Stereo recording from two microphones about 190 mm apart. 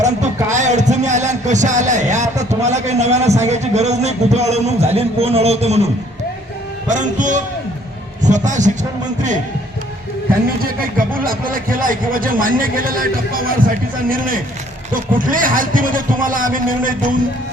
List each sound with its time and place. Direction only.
0.5 s a sound: 40° right (ahead or behind)
3.4 s a man's voice: 35° right (ahead or behind)
10.6 s speech: 45° right (ahead or behind)